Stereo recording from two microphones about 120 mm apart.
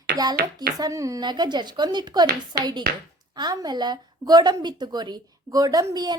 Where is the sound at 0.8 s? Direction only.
30° right (ahead or behind).